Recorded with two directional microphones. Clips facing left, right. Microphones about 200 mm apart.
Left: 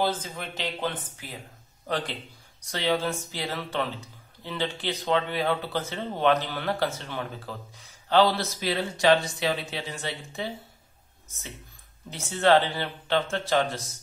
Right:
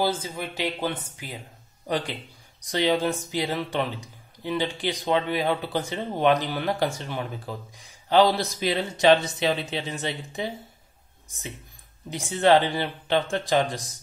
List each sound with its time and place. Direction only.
0.0 s a man's voice: 10° right (ahead or behind)
2.6 s a man's voice: 15° right (ahead or behind)
12.1 s a man's voice: 15° right (ahead or behind)